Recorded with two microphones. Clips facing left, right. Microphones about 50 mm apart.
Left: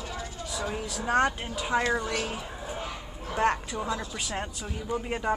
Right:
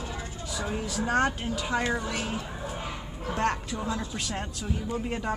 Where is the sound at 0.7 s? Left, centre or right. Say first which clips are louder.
Even; centre.